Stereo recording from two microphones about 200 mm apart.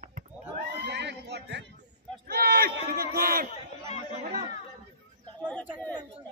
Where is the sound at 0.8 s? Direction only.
60° right (ahead or behind).